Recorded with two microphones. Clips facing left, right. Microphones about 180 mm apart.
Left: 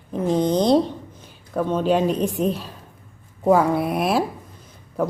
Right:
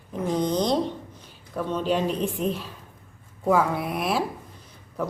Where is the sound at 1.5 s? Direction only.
50° left (ahead or behind).